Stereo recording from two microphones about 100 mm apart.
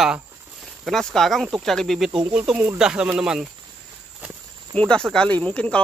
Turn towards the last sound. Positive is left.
turn(degrees=10)  # may be behind; listen again after turning